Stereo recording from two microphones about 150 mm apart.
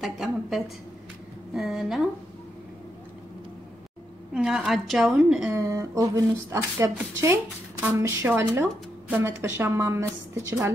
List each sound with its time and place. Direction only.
0.0 s a woman's voice: centre (ahead or behind)
4.3 s a woman's voice: 5° right (ahead or behind)
5.5 s a woman's voice: 20° right (ahead or behind)